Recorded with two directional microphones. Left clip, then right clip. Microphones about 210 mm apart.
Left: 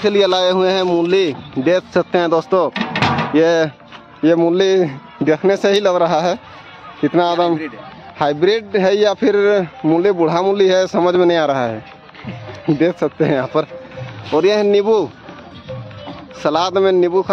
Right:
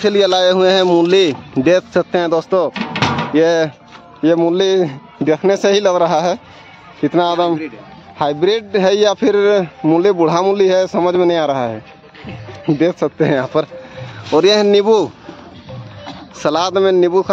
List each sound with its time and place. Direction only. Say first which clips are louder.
0.0 s speech: right 2 dB; 5° right (ahead or behind)
2.0 s a man's voice: even; centre (ahead or behind)
2.7 s music: left 1 dB; 25° left (ahead or behind)
3.3 s a man's voice: right 1 dB; centre (ahead or behind)
16.3 s speech: right 1 dB; 10° right (ahead or behind)